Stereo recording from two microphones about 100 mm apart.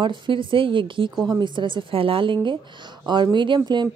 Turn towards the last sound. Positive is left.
turn(degrees=-45)  # may be behind; listen again after turning